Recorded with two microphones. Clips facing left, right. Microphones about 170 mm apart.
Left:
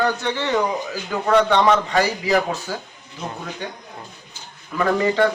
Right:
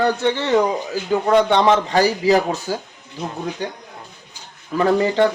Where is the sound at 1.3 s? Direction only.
20° right (ahead or behind).